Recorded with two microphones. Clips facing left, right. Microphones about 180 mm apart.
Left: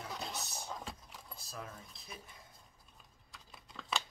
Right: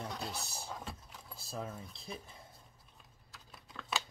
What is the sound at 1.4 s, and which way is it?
Speech, 30° right (ahead or behind).